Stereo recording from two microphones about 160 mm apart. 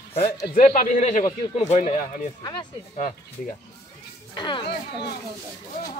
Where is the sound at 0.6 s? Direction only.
55° left (ahead or behind).